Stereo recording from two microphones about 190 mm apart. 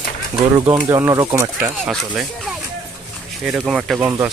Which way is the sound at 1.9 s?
Centre (ahead or behind).